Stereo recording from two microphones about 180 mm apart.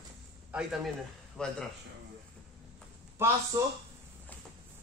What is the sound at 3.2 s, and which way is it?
Speech, 15° right (ahead or behind).